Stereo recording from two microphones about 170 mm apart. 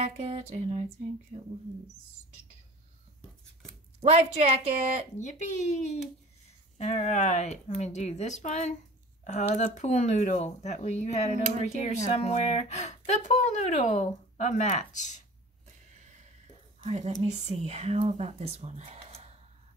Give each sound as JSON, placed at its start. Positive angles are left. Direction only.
{"t": 0.0, "sound": "speech", "side_deg": -40}
{"t": 4.0, "sound": "speech", "side_deg": -40}
{"t": 5.2, "sound": "speech", "side_deg": 45}
{"t": 11.3, "sound": "speech", "side_deg": -45}
{"t": 12.0, "sound": "speech", "side_deg": 40}
{"t": 16.8, "sound": "speech", "side_deg": -40}